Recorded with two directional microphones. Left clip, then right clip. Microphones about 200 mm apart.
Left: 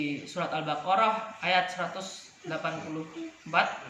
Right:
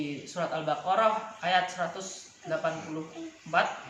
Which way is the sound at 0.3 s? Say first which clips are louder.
Right 2 dB; 20° right (ahead or behind).